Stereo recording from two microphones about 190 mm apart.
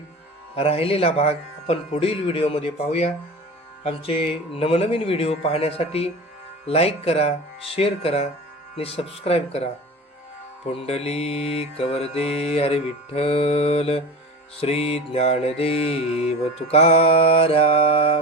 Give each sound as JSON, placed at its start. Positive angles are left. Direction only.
{"t": 0.5, "sound": "mantra", "side_deg": 30}
{"t": 10.7, "sound": "mantra", "side_deg": 30}